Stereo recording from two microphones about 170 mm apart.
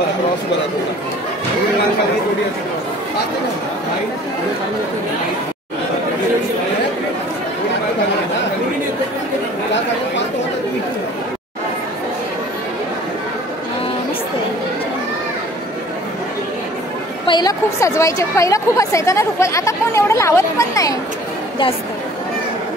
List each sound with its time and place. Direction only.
17.3 s a woman's voice: 25° left (ahead or behind)